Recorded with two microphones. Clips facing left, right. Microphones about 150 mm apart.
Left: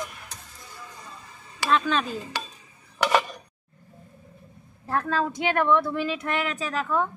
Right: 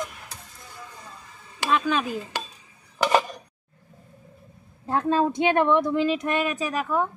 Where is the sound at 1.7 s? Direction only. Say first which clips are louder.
Even; 10° right (ahead or behind).